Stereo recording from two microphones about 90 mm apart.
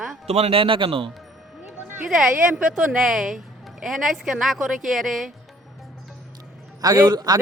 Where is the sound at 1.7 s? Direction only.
25° right (ahead or behind).